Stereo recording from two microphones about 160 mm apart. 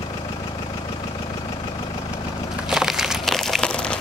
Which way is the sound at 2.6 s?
5° right (ahead or behind).